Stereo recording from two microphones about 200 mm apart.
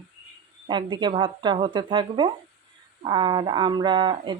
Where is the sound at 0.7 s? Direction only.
25° right (ahead or behind).